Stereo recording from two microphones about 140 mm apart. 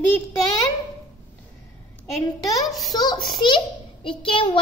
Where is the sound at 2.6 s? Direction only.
Centre (ahead or behind).